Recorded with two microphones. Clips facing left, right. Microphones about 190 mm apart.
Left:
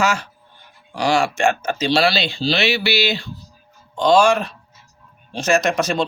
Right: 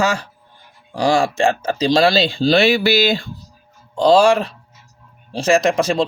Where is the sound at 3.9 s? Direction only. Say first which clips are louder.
Right 2 dB; 35° right (ahead or behind).